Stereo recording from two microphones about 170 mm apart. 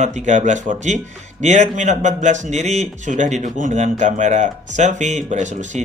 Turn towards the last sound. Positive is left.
turn(degrees=-45)  # may be behind; listen again after turning